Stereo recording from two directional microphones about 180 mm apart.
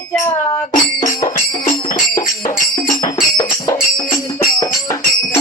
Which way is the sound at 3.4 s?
20° left (ahead or behind).